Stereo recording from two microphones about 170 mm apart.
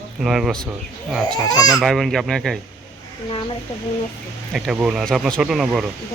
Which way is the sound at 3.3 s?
30° left (ahead or behind).